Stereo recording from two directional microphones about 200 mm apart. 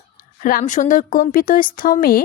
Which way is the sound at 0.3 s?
45° left (ahead or behind).